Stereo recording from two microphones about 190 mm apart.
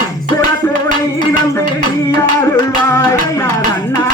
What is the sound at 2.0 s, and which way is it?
Music, 15° left (ahead or behind).